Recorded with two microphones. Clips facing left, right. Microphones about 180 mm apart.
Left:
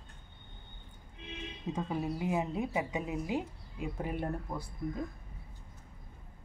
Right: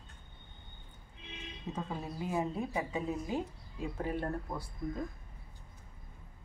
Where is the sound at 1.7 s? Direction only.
15° left (ahead or behind).